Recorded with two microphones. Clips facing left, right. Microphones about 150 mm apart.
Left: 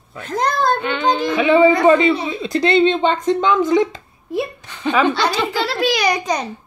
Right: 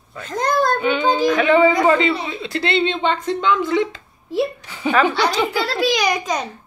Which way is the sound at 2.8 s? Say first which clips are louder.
Left 3 dB; 45° left (ahead or behind).